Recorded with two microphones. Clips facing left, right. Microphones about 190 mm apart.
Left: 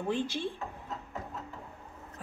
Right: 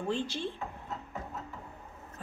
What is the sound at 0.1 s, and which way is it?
Speech, 15° left (ahead or behind).